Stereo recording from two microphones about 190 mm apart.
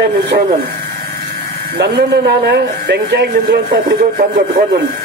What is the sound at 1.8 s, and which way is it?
A man's voice, 60° right (ahead or behind).